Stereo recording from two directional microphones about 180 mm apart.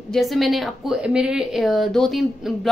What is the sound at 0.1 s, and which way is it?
A woman's voice, centre (ahead or behind).